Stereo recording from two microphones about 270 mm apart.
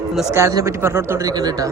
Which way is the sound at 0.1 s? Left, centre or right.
Centre.